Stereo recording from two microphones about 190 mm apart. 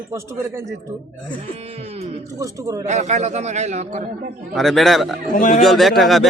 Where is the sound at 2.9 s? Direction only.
35° right (ahead or behind).